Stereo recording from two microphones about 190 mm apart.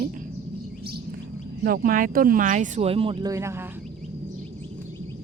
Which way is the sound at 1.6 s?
50° right (ahead or behind).